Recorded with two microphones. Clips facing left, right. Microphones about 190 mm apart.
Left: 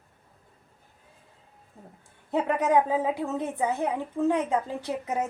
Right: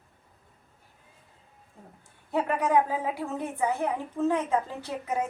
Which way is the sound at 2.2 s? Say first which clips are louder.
Left 2 dB; 20° left (ahead or behind).